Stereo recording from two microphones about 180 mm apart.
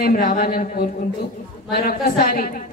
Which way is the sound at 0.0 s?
50° left (ahead or behind).